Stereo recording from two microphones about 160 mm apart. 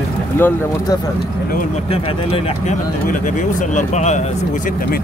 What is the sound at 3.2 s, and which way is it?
Speech, 50° left (ahead or behind).